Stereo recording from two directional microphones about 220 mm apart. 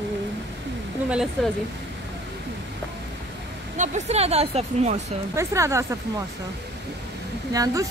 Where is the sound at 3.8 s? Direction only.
30° right (ahead or behind).